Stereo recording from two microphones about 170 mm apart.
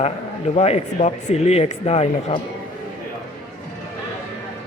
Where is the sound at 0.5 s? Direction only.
40° left (ahead or behind).